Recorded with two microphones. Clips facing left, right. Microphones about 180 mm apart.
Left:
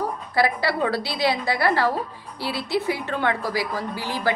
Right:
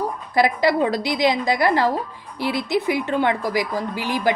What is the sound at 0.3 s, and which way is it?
A woman's voice, 15° right (ahead or behind).